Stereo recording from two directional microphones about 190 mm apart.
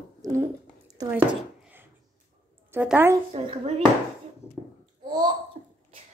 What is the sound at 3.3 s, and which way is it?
Speech, 30° right (ahead or behind).